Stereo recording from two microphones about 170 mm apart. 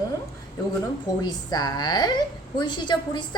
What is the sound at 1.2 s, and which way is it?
A woman's voice, 25° left (ahead or behind).